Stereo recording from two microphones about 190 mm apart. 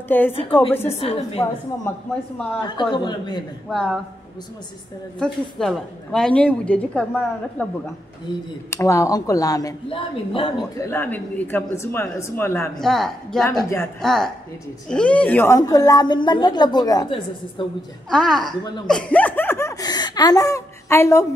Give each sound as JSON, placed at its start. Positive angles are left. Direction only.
{"t": 0.1, "sound": "speech", "side_deg": 10}
{"t": 0.9, "sound": "a woman's voice", "side_deg": 30}
{"t": 1.4, "sound": "speech", "side_deg": 10}
{"t": 2.6, "sound": "a woman's voice", "side_deg": 25}
{"t": 3.7, "sound": "a woman's voice", "side_deg": 0}
{"t": 5.2, "sound": "a woman's voice", "side_deg": 0}
{"t": 8.6, "sound": "a woman's voice", "side_deg": 15}
{"t": 10.9, "sound": "speech", "side_deg": 10}
{"t": 12.8, "sound": "a woman's voice", "side_deg": 0}
{"t": 18.1, "sound": "a woman's voice", "side_deg": 0}
{"t": 18.9, "sound": "laughter", "side_deg": 5}